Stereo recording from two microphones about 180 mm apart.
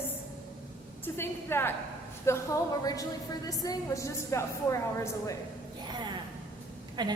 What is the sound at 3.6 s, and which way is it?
A woman's voice, 15° left (ahead or behind).